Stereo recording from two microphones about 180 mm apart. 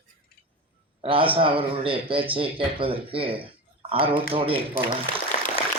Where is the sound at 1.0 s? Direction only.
30° right (ahead or behind).